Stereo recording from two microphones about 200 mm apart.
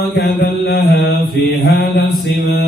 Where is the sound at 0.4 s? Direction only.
55° left (ahead or behind).